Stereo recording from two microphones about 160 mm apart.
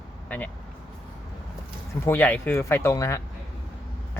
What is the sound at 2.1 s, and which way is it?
Speech, 10° left (ahead or behind).